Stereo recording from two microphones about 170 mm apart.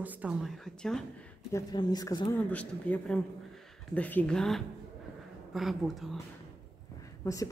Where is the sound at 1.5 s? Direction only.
20° left (ahead or behind).